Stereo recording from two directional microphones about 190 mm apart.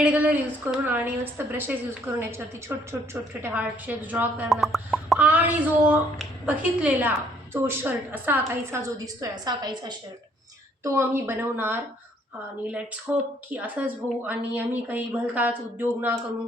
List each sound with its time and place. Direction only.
0.0 s a woman's voice: 5° right (ahead or behind)
13.1 s a woman's voice: 5° right (ahead or behind)